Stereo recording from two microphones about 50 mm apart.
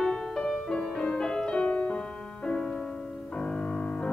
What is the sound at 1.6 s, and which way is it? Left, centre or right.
Music, left.